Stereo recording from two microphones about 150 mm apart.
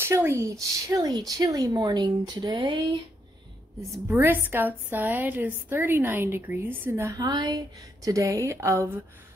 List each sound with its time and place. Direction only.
0.0 s speech: 15° right (ahead or behind); by 3.0 s 30° right (ahead or behind)
4.1 s a woman's voice: 15° right (ahead or behind)